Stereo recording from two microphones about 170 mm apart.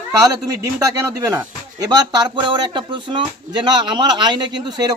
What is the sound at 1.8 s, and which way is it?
A man's voice, 25° right (ahead or behind).